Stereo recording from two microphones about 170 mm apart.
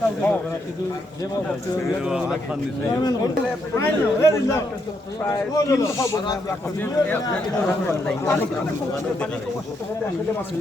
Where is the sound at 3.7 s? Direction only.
15° left (ahead or behind).